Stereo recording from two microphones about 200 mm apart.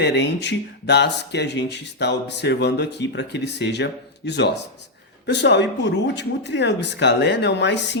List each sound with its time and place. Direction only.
0.0 s speech: 55° left (ahead or behind)